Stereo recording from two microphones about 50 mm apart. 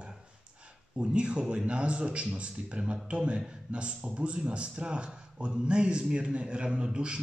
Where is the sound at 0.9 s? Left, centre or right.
Right.